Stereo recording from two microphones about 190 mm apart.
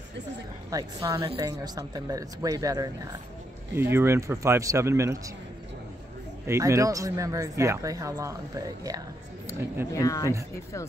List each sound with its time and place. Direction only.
0.7 s speech: 20° right (ahead or behind)
6.4 s speech: 15° right (ahead or behind)
9.5 s speech: 15° left (ahead or behind)